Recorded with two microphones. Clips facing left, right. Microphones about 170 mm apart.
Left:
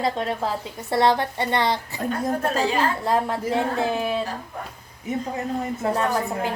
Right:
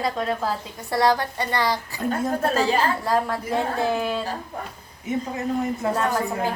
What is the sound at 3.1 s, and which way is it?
Speech, 25° left (ahead or behind).